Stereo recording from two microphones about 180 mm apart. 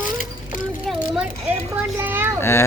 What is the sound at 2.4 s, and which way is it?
Speech, 15° left (ahead or behind).